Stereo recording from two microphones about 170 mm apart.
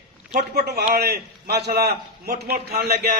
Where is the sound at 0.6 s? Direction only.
65° right (ahead or behind).